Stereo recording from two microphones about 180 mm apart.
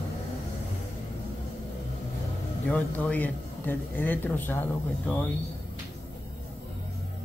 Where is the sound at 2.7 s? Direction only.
10° left (ahead or behind).